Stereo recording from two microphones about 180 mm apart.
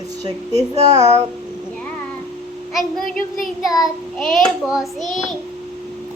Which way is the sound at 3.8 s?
Centre (ahead or behind).